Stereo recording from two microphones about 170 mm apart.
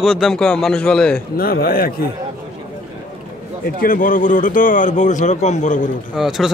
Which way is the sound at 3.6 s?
55° left (ahead or behind).